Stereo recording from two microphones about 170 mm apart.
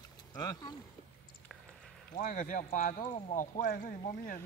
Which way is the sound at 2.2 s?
50° left (ahead or behind).